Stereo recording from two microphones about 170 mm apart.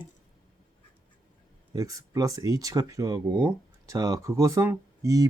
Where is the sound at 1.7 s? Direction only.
20° right (ahead or behind).